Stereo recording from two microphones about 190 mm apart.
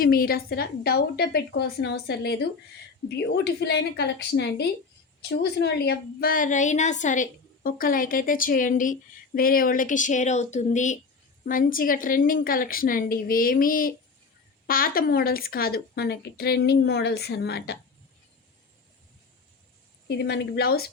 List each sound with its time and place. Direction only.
0.0 s a woman's voice: 50° left (ahead or behind)
20.1 s a woman's voice: 60° left (ahead or behind)